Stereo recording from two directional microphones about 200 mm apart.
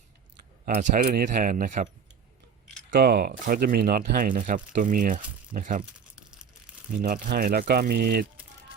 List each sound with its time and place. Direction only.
0.6 s speech: 45° right (ahead or behind)
2.9 s speech: 50° right (ahead or behind)
7.0 s speech: 45° right (ahead or behind)